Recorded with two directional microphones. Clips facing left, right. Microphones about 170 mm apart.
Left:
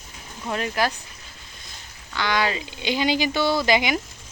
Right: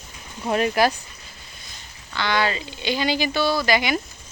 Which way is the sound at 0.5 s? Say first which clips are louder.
Right 5 dB; 15° right (ahead or behind).